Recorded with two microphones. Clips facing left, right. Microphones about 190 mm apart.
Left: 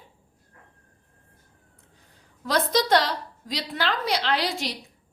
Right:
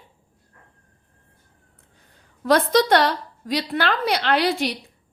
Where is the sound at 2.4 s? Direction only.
60° right (ahead or behind).